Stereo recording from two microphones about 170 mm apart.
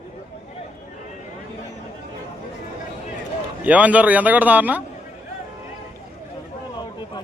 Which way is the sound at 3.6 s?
10° right (ahead or behind).